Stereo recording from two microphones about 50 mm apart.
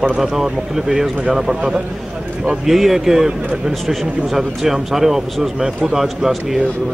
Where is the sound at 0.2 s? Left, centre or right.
Centre.